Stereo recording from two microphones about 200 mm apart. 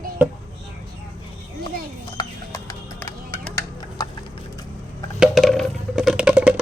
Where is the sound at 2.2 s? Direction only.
20° left (ahead or behind).